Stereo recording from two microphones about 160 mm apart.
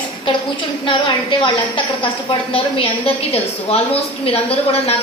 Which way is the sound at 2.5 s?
35° left (ahead or behind).